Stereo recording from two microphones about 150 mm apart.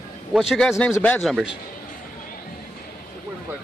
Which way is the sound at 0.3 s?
Centre (ahead or behind).